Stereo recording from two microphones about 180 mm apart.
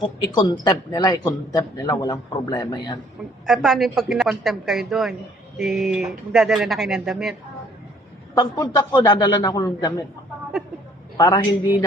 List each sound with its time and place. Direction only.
0.2 s a woman's voice: 25° left (ahead or behind)
3.4 s speech: centre (ahead or behind)
8.4 s a woman's voice: 20° left (ahead or behind)
11.2 s a woman's voice: 25° left (ahead or behind)